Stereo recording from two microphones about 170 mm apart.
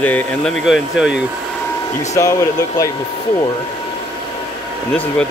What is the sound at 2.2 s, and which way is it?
Speech, 15° left (ahead or behind).